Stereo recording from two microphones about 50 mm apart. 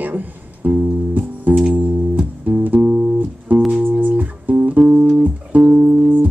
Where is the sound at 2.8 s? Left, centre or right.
Right.